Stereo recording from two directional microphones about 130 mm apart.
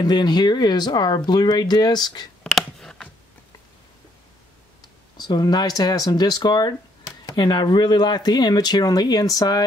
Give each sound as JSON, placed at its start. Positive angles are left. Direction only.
{"t": 0.0, "sound": "speech", "side_deg": 35}
{"t": 2.4, "sound": "a sound", "side_deg": 5}
{"t": 5.1, "sound": "speech", "side_deg": 30}